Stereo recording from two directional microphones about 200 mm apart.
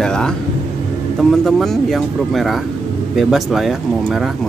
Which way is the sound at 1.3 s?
Centre (ahead or behind).